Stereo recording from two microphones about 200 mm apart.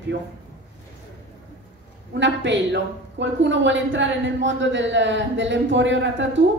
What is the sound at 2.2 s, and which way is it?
A woman's voice, 65° right (ahead or behind).